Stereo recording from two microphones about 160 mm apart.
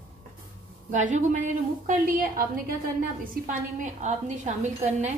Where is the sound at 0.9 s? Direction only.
50° right (ahead or behind).